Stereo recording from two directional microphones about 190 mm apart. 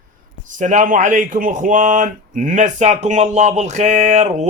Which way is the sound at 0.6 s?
40° right (ahead or behind).